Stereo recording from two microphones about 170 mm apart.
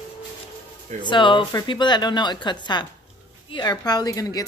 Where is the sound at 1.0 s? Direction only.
30° left (ahead or behind).